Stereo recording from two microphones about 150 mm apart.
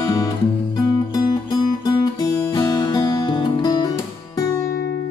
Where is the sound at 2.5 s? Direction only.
30° left (ahead or behind).